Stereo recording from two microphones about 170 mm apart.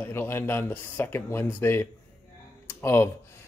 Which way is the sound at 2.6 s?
15° left (ahead or behind).